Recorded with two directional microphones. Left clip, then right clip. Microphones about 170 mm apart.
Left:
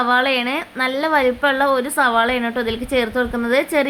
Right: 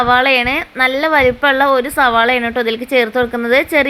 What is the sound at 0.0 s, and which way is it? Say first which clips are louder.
Speech: right 5 dB; 15° right (ahead or behind).